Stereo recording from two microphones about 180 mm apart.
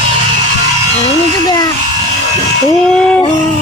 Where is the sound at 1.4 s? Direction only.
20° left (ahead or behind).